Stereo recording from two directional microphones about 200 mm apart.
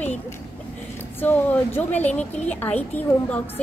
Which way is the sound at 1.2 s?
10° left (ahead or behind).